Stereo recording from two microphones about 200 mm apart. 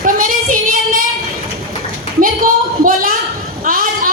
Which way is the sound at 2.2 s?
45° right (ahead or behind).